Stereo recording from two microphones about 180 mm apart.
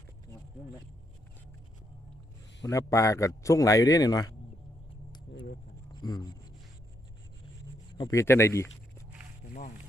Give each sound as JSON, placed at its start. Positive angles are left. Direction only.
{"t": 2.6, "sound": "a man's voice", "side_deg": 15}
{"t": 5.9, "sound": "speech", "side_deg": 25}
{"t": 7.9, "sound": "speech", "side_deg": 20}
{"t": 9.4, "sound": "a sound", "side_deg": 85}